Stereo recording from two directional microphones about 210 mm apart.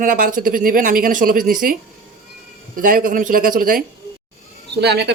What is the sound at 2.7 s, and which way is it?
Speech, 40° right (ahead or behind).